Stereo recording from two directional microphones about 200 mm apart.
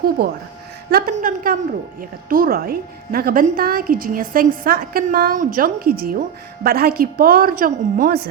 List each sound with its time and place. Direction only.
0.2 s a woman's voice: 50° right (ahead or behind)